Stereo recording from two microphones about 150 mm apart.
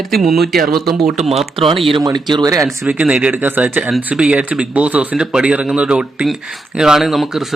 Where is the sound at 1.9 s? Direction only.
30° right (ahead or behind).